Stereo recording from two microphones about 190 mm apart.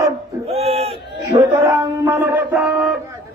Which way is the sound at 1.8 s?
10° right (ahead or behind).